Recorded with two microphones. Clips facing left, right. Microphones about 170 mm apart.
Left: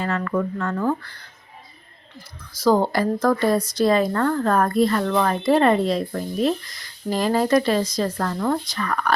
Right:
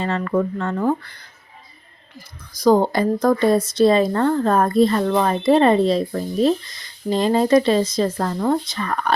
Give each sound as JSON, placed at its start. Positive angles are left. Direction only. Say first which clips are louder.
{"t": 0.0, "sound": "speech", "louder": "right 3 dB", "side_deg": -25}